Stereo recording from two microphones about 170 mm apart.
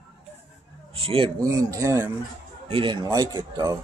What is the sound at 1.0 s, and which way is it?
Speech, 35° right (ahead or behind).